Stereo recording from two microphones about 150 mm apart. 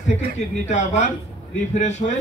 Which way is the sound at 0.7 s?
50° left (ahead or behind).